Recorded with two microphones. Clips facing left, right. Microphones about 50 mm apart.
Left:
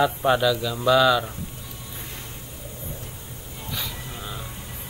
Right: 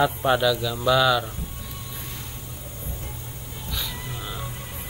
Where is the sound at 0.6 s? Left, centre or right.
Left.